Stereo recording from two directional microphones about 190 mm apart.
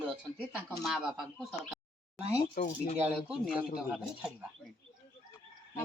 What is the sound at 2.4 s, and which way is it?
Speech, 50° left (ahead or behind).